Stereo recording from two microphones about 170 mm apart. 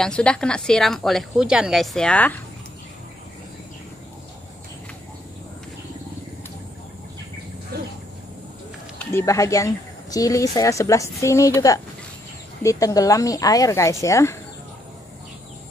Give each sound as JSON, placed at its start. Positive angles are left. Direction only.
{"t": 0.0, "sound": "a woman's voice", "side_deg": 5}
{"t": 8.9, "sound": "a woman's voice", "side_deg": 15}